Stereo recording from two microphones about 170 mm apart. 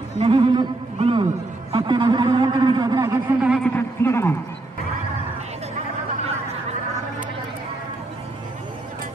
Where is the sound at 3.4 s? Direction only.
5° right (ahead or behind).